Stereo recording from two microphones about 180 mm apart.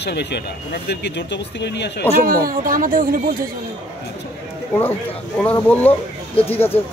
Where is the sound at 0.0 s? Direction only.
70° left (ahead or behind).